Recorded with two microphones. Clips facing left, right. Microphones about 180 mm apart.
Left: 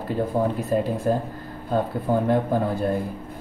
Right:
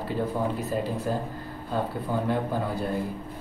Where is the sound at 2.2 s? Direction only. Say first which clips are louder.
Left 5 dB; 50° left (ahead or behind).